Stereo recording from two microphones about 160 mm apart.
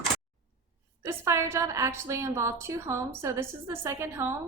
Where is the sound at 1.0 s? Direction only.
15° right (ahead or behind).